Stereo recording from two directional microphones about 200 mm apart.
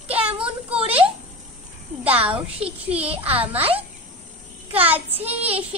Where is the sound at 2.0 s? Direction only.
25° right (ahead or behind).